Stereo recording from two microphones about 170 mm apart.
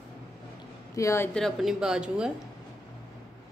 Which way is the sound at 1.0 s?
20° left (ahead or behind).